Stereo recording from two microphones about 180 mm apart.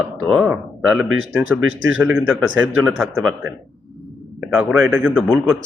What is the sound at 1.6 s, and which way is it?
Speech, 90° right.